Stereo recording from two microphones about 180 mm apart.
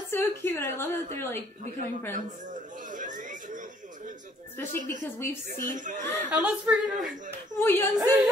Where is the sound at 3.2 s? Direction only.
45° right (ahead or behind).